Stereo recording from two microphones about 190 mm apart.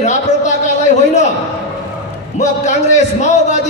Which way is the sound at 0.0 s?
40° left (ahead or behind).